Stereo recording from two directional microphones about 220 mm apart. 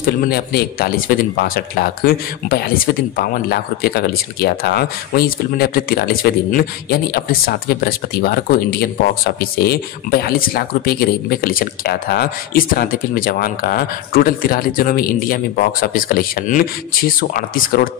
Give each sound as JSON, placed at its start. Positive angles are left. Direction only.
{"t": 0.0, "sound": "a man's voice", "side_deg": 45}